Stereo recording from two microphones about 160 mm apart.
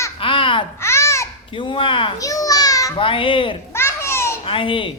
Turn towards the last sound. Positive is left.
turn(degrees=30)  # may be behind; listen again after turning